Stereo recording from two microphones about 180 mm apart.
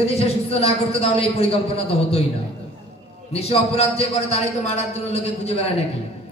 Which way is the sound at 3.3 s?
35° left (ahead or behind).